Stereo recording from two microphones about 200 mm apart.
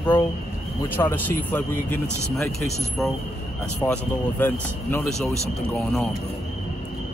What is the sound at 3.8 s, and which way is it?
Speech, 10° left (ahead or behind).